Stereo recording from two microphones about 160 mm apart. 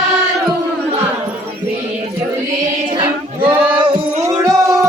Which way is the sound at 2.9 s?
30° right (ahead or behind).